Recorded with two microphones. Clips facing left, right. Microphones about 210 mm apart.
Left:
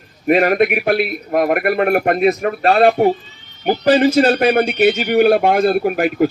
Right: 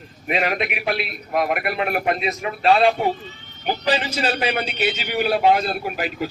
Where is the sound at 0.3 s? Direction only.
50° left (ahead or behind).